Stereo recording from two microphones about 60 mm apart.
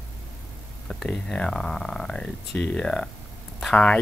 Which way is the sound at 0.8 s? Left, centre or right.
Centre.